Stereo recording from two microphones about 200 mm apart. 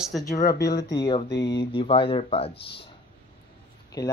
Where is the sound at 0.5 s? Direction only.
15° left (ahead or behind).